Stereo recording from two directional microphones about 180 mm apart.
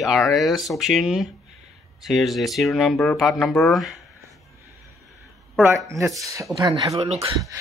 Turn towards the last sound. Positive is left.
turn(degrees=-35)  # may be behind; listen again after turning